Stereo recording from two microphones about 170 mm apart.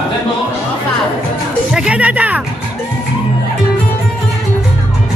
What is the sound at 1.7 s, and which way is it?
Speech, 5° right (ahead or behind).